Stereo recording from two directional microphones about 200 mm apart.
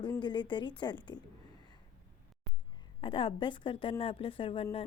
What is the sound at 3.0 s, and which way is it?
Speech, 25° left (ahead or behind).